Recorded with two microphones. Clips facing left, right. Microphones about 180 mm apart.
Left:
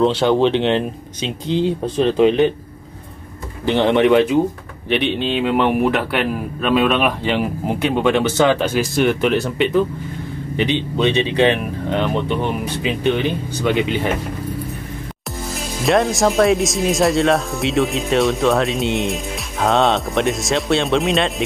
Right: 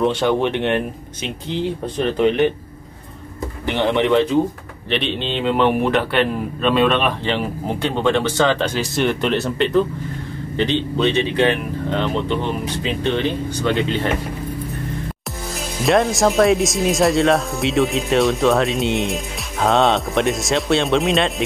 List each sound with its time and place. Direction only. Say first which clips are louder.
0.0 s a man's voice: left 3 dB; 20° left (ahead or behind)
3.6 s a man's voice: left 4 dB; 20° left (ahead or behind)
15.8 s speech: even; centre (ahead or behind)